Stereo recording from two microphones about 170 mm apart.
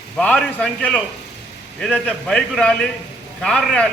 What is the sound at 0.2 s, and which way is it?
A man's voice, 5° left (ahead or behind).